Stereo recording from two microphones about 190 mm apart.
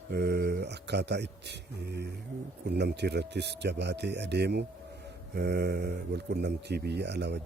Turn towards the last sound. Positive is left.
turn(degrees=-65)  # may be behind; listen again after turning